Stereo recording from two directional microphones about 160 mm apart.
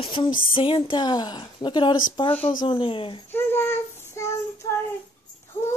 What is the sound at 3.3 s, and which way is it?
Child singing, 15° left (ahead or behind).